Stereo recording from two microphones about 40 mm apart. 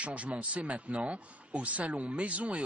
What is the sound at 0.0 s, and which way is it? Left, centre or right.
Speech, right.